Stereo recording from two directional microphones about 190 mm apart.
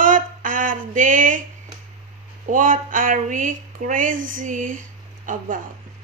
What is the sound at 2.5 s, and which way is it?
Speech, 45° right (ahead or behind).